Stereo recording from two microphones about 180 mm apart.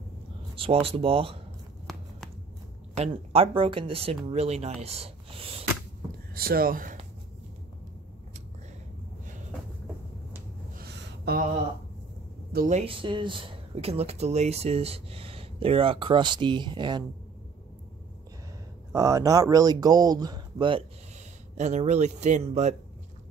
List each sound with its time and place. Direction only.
0.8 s speech: 30° right (ahead or behind)
1.9 s a sound: centre (ahead or behind)
3.0 s speech: 30° right (ahead or behind)
6.3 s speech: 55° right (ahead or behind)
10.9 s a sound: 65° right (ahead or behind)
12.5 s speech: 40° right (ahead or behind); by 17.0 s 25° right (ahead or behind)
18.9 s speech: 20° right (ahead or behind)
21.5 s speech: 40° right (ahead or behind)